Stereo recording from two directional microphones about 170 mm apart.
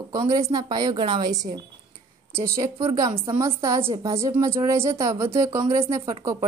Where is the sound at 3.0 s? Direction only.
25° right (ahead or behind).